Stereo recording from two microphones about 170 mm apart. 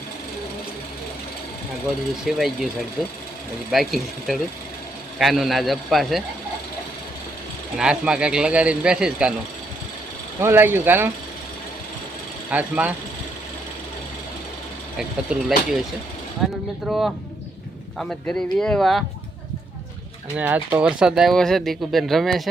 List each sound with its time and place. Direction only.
2.2 s speech: centre (ahead or behind)
7.8 s speech: 5° right (ahead or behind)
10.4 s speech: 15° right (ahead or behind)
12.5 s speech: 10° right (ahead or behind)
14.9 s speech: centre (ahead or behind)
20.3 s speech: 10° right (ahead or behind)